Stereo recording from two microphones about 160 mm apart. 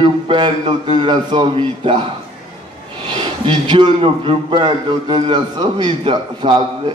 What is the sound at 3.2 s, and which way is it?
A man's voice, 30° right (ahead or behind).